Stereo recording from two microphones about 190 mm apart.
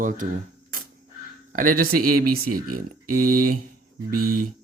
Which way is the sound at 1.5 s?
45° right (ahead or behind).